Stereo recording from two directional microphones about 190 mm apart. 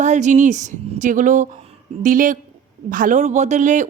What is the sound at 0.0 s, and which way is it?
Speech, 40° right (ahead or behind).